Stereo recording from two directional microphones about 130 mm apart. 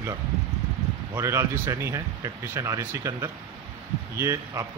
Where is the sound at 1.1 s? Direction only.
20° right (ahead or behind).